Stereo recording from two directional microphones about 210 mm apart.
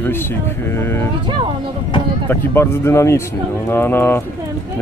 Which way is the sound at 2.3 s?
10° left (ahead or behind).